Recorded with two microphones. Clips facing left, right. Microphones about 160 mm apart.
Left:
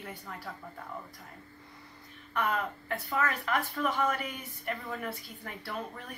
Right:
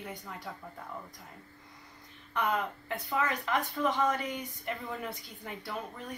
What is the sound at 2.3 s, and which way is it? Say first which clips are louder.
A woman's voice: even; 20° right (ahead or behind).